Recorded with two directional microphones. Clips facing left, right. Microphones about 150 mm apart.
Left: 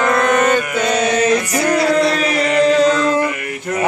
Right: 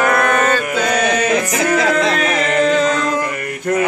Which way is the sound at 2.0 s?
90° right.